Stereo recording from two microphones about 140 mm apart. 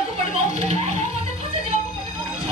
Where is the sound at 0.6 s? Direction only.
50° right (ahead or behind).